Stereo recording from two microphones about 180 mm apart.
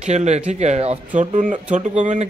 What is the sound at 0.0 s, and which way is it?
A man's voice, 40° right (ahead or behind).